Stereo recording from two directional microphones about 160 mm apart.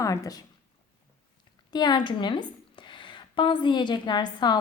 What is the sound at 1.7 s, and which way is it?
A woman's voice, 25° left (ahead or behind).